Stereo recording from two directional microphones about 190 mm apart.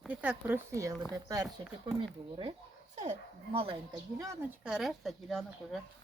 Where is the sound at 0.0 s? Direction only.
5° right (ahead or behind).